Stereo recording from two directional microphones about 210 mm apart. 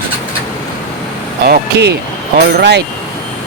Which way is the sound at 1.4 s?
50° right (ahead or behind).